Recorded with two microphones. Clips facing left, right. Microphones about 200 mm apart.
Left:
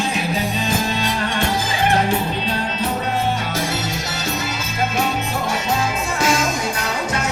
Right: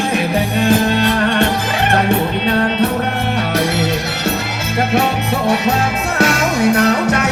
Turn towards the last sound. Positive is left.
turn(degrees=-65)  # may be behind; listen again after turning